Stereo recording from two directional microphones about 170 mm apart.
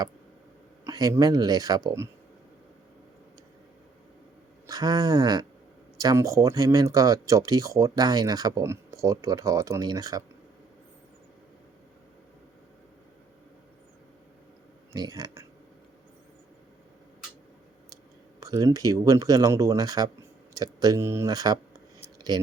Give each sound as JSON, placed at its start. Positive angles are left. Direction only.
{"t": 0.9, "sound": "speech", "side_deg": -20}
{"t": 4.6, "sound": "speech", "side_deg": -20}
{"t": 14.9, "sound": "speech", "side_deg": -25}
{"t": 18.3, "sound": "speech", "side_deg": -20}